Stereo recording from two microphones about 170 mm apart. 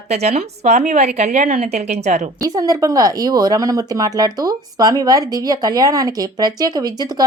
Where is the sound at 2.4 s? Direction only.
20° right (ahead or behind).